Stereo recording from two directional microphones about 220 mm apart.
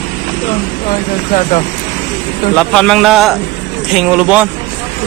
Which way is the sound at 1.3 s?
35° left (ahead or behind).